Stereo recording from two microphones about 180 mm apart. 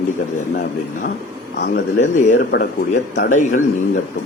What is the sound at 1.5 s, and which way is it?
Speech, 65° left (ahead or behind).